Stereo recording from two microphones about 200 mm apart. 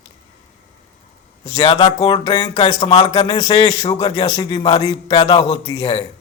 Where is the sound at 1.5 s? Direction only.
30° left (ahead or behind).